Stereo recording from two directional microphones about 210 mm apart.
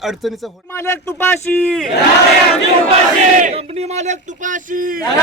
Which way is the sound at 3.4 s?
30° right (ahead or behind).